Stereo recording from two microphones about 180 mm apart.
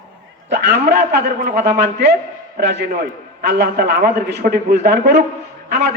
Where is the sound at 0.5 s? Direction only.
65° right (ahead or behind).